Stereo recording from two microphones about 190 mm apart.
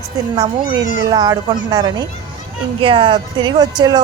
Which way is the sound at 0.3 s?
20° right (ahead or behind).